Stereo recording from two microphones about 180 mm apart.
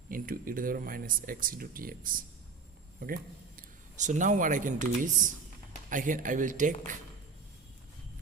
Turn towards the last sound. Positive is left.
turn(degrees=-45)  # may be behind; listen again after turning